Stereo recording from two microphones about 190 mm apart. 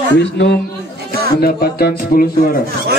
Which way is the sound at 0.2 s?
70° left (ahead or behind).